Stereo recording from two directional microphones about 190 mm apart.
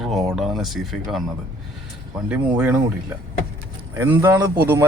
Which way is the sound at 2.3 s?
5° right (ahead or behind).